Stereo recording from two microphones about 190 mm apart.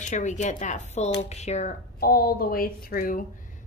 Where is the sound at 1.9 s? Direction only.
50° left (ahead or behind).